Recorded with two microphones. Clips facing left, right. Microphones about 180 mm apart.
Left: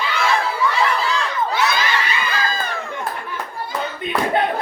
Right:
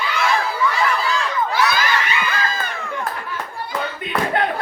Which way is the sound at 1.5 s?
25° left (ahead or behind).